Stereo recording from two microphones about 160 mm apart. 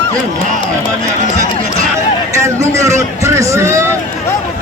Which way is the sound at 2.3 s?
20° right (ahead or behind).